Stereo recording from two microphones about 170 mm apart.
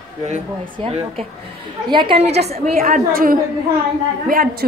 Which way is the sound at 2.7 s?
55° right (ahead or behind).